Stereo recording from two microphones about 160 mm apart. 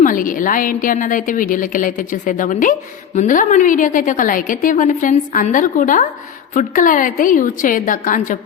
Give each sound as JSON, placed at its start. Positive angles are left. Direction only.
{"t": 0.0, "sound": "a woman's voice", "side_deg": 60}